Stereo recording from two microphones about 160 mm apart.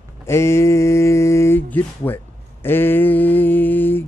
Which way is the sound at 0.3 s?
15° left (ahead or behind).